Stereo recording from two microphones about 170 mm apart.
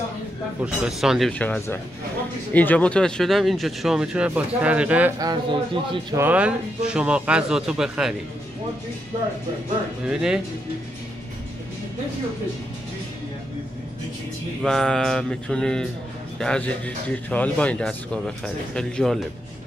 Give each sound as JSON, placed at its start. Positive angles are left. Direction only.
{"t": 0.6, "sound": "a man's voice", "side_deg": -5}
{"t": 1.4, "sound": "a man's voice", "side_deg": 10}
{"t": 5.2, "sound": "speech", "side_deg": -25}
{"t": 6.1, "sound": "a man's voice", "side_deg": -10}
{"t": 10.0, "sound": "a man's voice", "side_deg": -5}
{"t": 14.6, "sound": "a man's voice", "side_deg": 5}